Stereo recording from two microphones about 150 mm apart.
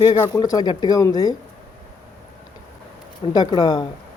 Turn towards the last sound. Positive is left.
turn(degrees=30)  # may be behind; listen again after turning